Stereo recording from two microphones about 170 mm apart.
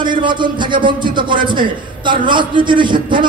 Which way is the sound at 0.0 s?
25° right (ahead or behind).